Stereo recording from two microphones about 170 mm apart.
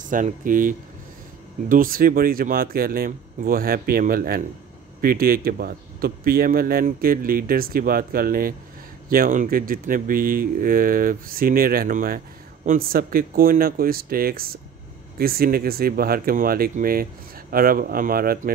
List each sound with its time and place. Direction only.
0.1 s speech: 50° right (ahead or behind)